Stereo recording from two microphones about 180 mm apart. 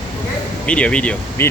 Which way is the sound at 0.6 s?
5° left (ahead or behind).